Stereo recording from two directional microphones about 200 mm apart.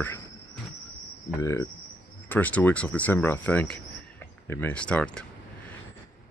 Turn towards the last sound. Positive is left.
turn(degrees=5)  # may be behind; listen again after turning